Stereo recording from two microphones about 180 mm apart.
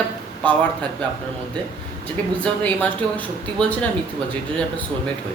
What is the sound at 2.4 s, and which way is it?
Speech, 10° left (ahead or behind).